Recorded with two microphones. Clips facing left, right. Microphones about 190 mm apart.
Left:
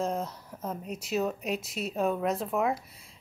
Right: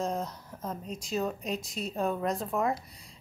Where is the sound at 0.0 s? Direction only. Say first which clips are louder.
Left 1 dB; 5° left (ahead or behind).